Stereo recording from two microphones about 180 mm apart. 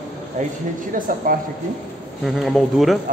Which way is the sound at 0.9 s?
50° right (ahead or behind).